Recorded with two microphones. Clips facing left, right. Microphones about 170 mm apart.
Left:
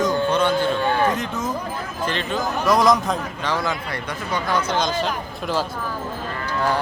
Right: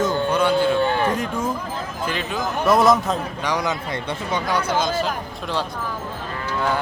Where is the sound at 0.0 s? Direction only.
10° right (ahead or behind).